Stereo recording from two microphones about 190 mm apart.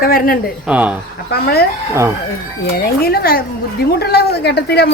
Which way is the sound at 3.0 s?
55° left (ahead or behind).